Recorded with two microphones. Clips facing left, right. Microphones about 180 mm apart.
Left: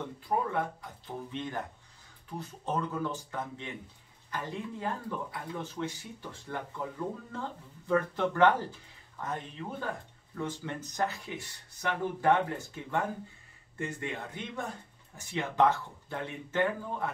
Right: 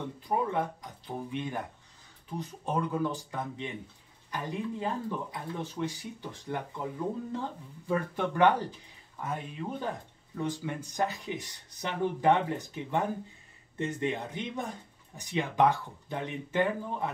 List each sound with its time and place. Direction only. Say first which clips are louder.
0.2 s speech: right 1 dB; 20° right (ahead or behind)